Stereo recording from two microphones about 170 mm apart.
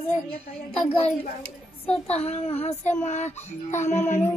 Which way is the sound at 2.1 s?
35° left (ahead or behind).